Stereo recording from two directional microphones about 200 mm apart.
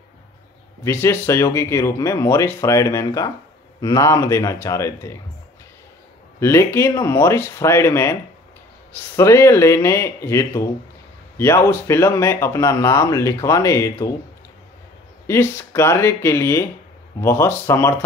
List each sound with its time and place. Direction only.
0.8 s speech: 10° left (ahead or behind)
6.4 s speech: 15° left (ahead or behind)
15.2 s speech: 15° left (ahead or behind)